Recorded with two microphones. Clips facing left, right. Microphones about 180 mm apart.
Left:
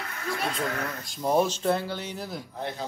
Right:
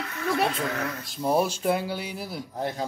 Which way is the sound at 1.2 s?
5° right (ahead or behind).